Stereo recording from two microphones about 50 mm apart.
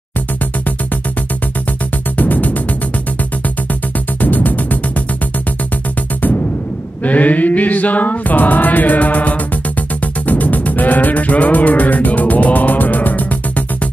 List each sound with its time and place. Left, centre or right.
2.1 s music: left
4.2 s music: left
7.0 s music: left